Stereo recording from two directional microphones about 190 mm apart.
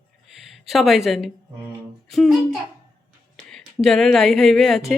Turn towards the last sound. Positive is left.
turn(degrees=0)  # may be behind; listen again after turning